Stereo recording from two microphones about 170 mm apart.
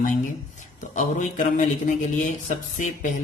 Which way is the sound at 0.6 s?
45° left (ahead or behind).